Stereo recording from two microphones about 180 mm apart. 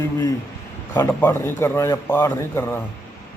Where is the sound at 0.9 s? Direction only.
10° left (ahead or behind).